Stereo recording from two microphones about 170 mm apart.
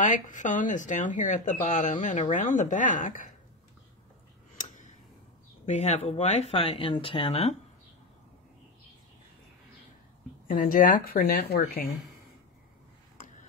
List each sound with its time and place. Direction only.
0.0 s speech: 45° left (ahead or behind)
4.6 s tick: 45° left (ahead or behind)
5.7 s speech: 45° left (ahead or behind)
10.5 s speech: 55° left (ahead or behind)